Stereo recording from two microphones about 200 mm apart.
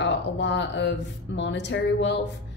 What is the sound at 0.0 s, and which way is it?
Speech, 60° left (ahead or behind).